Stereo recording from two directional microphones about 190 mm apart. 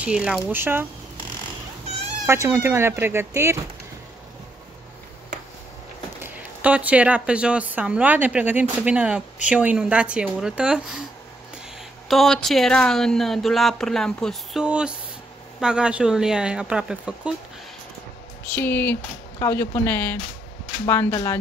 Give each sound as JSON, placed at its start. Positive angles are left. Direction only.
{"t": 0.0, "sound": "a woman's voice", "side_deg": -5}
{"t": 2.2, "sound": "a woman's voice", "side_deg": -15}
{"t": 6.2, "sound": "a woman's voice", "side_deg": -10}
{"t": 12.1, "sound": "speech", "side_deg": 0}
{"t": 18.5, "sound": "speech", "side_deg": 10}